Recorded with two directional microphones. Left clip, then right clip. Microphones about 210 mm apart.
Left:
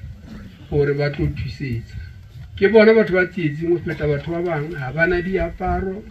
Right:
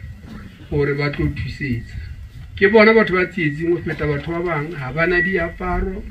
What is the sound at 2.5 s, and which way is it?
Speech, 20° right (ahead or behind).